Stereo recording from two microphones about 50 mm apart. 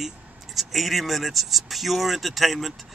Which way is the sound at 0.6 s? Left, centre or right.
Centre.